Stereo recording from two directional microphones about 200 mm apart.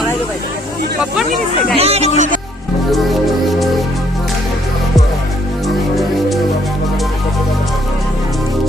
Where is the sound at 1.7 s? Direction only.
30° right (ahead or behind).